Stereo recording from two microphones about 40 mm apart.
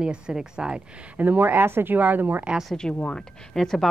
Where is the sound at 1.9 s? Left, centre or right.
Right.